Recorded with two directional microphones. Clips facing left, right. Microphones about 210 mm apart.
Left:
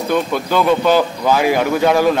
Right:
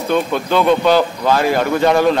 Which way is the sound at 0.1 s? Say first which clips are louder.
Right 1 dB; 5° left (ahead or behind).